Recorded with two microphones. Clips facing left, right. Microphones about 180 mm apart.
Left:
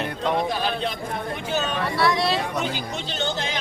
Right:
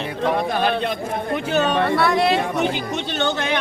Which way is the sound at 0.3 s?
60° right (ahead or behind).